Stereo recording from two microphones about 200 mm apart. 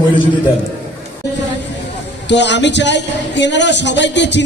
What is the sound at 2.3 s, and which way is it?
A man's voice, 60° left (ahead or behind).